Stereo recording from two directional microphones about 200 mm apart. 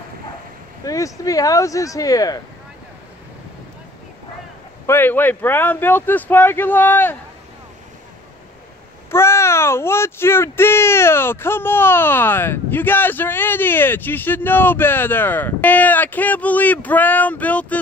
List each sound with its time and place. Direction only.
0.8 s speech: 15° left (ahead or behind)
4.8 s speech: 10° left (ahead or behind)
9.1 s speech: 15° left (ahead or behind)